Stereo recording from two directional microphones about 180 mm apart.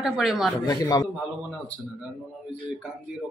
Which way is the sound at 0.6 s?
20° left (ahead or behind).